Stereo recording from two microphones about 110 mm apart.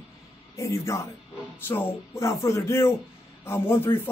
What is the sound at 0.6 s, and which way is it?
Speech, 25° left (ahead or behind).